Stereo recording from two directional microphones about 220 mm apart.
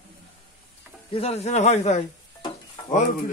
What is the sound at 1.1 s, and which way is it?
Speech, 30° left (ahead or behind).